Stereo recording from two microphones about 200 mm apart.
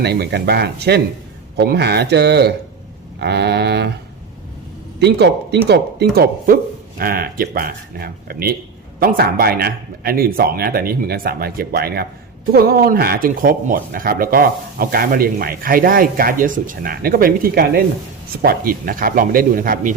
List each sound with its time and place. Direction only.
0.0 s speech: 55° right (ahead or behind)
4.9 s speech: 55° right (ahead or behind)